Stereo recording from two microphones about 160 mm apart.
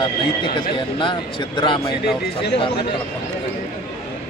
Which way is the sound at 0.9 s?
30° left (ahead or behind).